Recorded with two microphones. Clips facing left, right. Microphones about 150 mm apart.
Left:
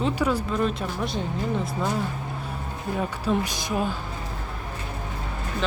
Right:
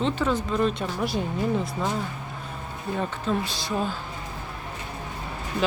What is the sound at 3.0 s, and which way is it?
Speech, 15° left (ahead or behind).